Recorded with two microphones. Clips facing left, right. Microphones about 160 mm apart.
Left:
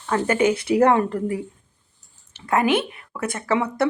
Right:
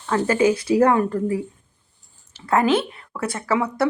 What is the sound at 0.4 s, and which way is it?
Speech, 25° left (ahead or behind).